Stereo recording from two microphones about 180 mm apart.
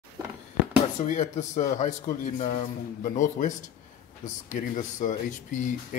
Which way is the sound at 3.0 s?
45° left (ahead or behind).